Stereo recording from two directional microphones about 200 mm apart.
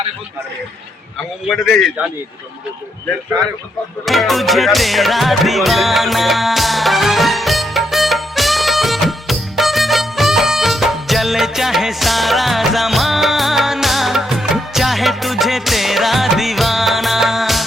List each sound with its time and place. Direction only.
1.5 s speech: centre (ahead or behind)
4.0 s music: centre (ahead or behind)